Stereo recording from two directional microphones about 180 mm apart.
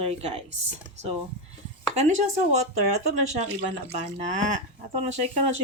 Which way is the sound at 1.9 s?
40° right (ahead or behind).